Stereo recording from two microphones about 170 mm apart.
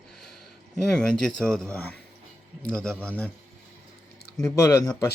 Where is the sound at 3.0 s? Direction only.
10° left (ahead or behind).